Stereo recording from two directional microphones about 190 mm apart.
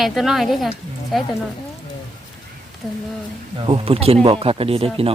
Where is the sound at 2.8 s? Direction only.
Centre (ahead or behind).